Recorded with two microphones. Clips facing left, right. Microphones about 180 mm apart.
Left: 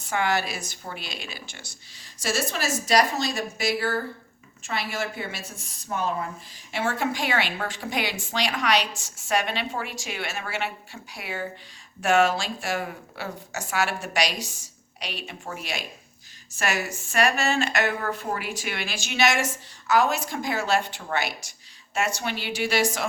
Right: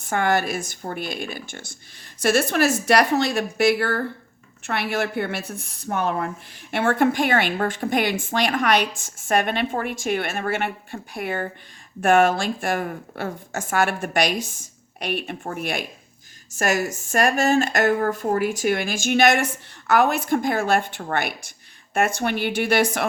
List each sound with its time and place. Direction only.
0.0 s a woman's voice: 50° right (ahead or behind)